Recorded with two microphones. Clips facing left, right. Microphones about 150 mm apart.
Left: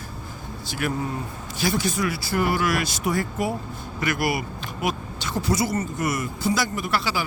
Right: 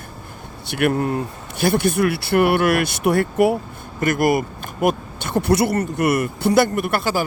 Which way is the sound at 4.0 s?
50° right (ahead or behind).